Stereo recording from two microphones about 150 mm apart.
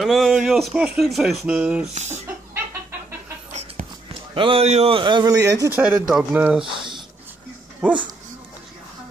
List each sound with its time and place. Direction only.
0.0 s speech: centre (ahead or behind)
2.0 s speech: 50° right (ahead or behind)
4.3 s speech: 35° right (ahead or behind)
5.8 s speech: 5° right (ahead or behind)
6.6 s a sound: 35° right (ahead or behind)
7.8 s speech: 10° right (ahead or behind)